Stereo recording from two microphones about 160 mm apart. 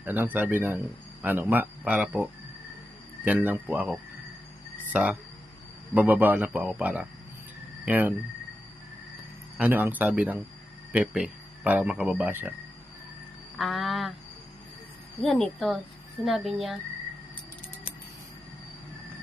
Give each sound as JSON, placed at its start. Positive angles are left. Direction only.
{"t": 0.0, "sound": "a man's voice", "side_deg": -10}
{"t": 3.3, "sound": "a man's voice", "side_deg": -10}
{"t": 9.6, "sound": "a man's voice", "side_deg": -10}
{"t": 13.6, "sound": "a woman's voice", "side_deg": 0}
{"t": 15.2, "sound": "a woman's voice", "side_deg": 0}